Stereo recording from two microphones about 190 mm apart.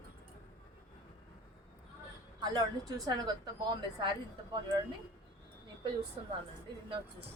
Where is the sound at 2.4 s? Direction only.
20° right (ahead or behind).